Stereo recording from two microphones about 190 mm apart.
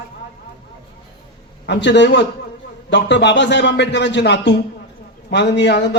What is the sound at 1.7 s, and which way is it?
A man's voice, 65° left (ahead or behind).